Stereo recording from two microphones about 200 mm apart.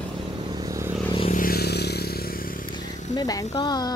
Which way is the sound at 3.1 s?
20° left (ahead or behind).